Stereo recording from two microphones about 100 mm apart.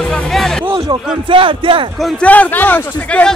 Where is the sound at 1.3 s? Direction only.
60° right (ahead or behind).